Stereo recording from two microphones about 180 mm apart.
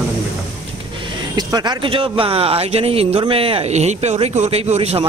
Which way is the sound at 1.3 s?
25° right (ahead or behind).